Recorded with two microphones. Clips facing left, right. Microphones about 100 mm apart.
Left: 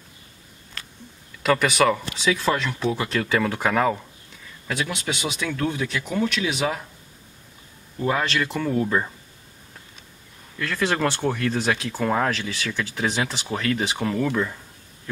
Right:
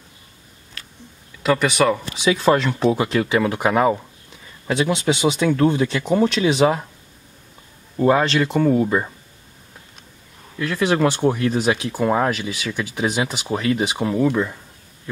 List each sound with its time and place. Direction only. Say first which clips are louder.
1.4 s speech: right 2 dB; centre (ahead or behind)
2.1 s speech: right 5 dB; 20° right (ahead or behind)
2.5 s speech: right 7 dB; 35° right (ahead or behind)
3.0 s speech: right 4 dB; 15° right (ahead or behind)
8.0 s speech: right 7 dB; 30° right (ahead or behind)
8.7 s speech: right 4 dB; 10° right (ahead or behind)
10.6 s speech: right 5 dB; 15° right (ahead or behind)